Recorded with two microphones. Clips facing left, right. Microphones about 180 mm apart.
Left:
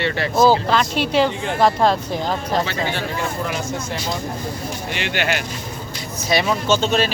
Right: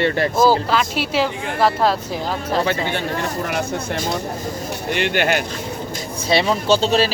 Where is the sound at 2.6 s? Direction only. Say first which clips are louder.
Right 3 dB; 55° right (ahead or behind).